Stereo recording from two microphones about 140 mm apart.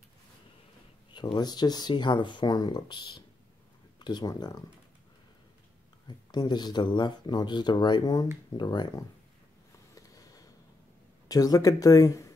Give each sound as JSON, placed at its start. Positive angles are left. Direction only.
{"t": 1.1, "sound": "speech", "side_deg": 30}
{"t": 6.0, "sound": "speech", "side_deg": 30}
{"t": 9.9, "sound": "a sound", "side_deg": 25}
{"t": 11.2, "sound": "speech", "side_deg": 25}